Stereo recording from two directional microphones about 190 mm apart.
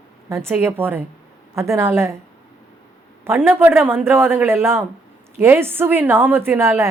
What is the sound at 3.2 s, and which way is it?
A man's voice, 10° right (ahead or behind).